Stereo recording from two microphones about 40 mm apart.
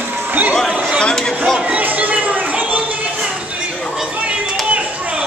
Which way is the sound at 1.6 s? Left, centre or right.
Right.